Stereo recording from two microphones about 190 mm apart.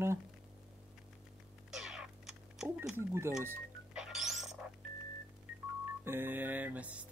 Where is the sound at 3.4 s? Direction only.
5° right (ahead or behind).